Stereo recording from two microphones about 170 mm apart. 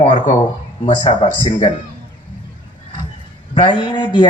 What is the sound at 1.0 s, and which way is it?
Speech, 35° left (ahead or behind).